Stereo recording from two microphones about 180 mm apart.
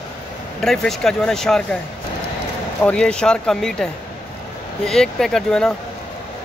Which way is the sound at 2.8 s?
5° left (ahead or behind).